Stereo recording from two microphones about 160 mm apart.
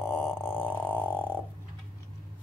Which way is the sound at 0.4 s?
10° left (ahead or behind).